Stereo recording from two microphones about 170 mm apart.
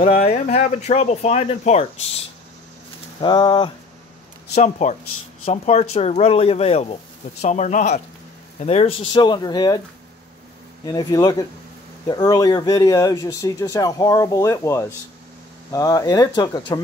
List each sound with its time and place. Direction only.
0.0 s speech: 40° left (ahead or behind)
3.2 s speech: 25° left (ahead or behind)
4.6 s speech: 45° left (ahead or behind)
9.1 s speech: 25° left (ahead or behind)
10.9 s speech: 20° left (ahead or behind)